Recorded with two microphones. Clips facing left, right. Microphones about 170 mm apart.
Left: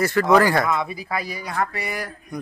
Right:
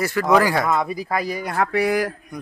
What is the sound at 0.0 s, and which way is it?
Speech, 10° right (ahead or behind).